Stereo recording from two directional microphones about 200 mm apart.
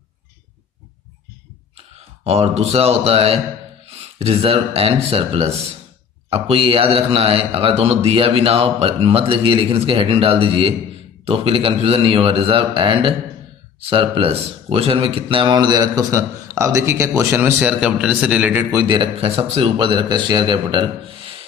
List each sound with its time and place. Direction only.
2.2 s a man's voice: 30° right (ahead or behind)